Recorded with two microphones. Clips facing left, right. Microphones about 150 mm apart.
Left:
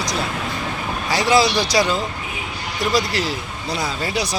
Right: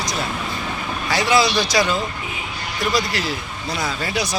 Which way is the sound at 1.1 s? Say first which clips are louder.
Left 1 dB; 35° left (ahead or behind).